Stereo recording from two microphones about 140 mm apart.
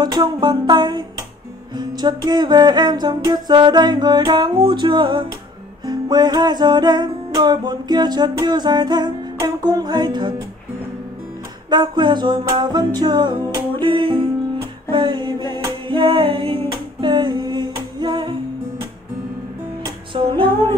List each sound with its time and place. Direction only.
0.0 s music: 30° right (ahead or behind)
11.7 s music: 30° right (ahead or behind)
20.1 s music: 40° right (ahead or behind)